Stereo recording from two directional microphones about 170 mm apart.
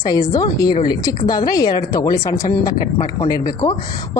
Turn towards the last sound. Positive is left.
turn(degrees=20)  # may be behind; listen again after turning